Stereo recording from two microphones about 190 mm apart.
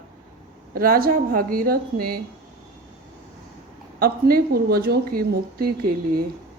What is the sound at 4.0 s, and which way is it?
Speech, 50° right (ahead or behind).